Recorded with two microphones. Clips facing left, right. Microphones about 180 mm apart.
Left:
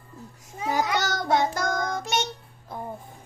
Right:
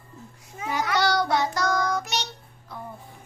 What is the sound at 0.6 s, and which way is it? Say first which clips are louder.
Babbling: left 3 dB; 40° left (ahead or behind).